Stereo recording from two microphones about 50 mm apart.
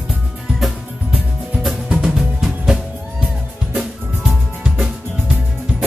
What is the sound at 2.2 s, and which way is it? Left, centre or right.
Music, centre.